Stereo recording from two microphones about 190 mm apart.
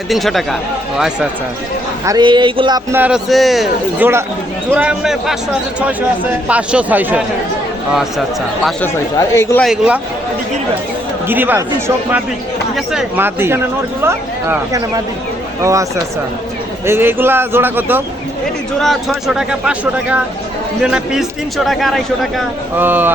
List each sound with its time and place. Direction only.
0.1 s a man's voice: centre (ahead or behind)
2.0 s speech: 20° right (ahead or behind)
2.9 s a man's voice: 5° right (ahead or behind)
6.5 s a man's voice: 5° right (ahead or behind)
8.8 s speech: 15° left (ahead or behind)
9.6 s a man's voice: 5° right (ahead or behind)
11.3 s a man's voice: 10° right (ahead or behind)
12.7 s a man's voice: 5° right (ahead or behind)
18.8 s a man's voice: centre (ahead or behind)
22.8 s a man's voice: 10° right (ahead or behind)